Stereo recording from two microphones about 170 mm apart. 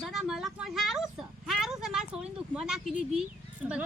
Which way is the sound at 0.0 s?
Centre (ahead or behind).